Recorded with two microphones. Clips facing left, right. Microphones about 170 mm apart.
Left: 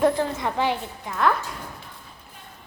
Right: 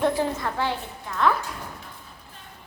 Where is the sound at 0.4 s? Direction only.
15° left (ahead or behind).